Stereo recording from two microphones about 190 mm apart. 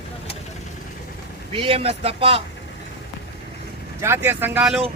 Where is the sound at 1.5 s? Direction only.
30° right (ahead or behind).